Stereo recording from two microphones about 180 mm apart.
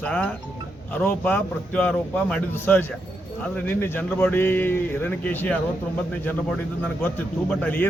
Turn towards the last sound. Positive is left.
turn(degrees=10)  # may be behind; listen again after turning